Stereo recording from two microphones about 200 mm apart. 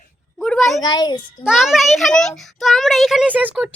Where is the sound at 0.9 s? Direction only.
20° left (ahead or behind).